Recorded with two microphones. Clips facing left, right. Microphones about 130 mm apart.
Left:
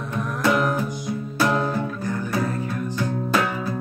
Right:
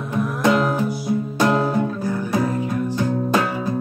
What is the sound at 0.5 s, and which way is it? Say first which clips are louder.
Music: right 3 dB; 30° right (ahead or behind).